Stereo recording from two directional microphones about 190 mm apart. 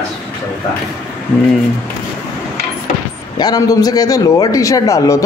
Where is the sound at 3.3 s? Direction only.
20° left (ahead or behind).